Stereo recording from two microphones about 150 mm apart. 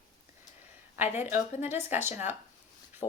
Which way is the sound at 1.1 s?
15° right (ahead or behind).